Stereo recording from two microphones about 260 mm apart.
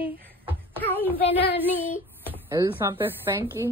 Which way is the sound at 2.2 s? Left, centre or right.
Centre.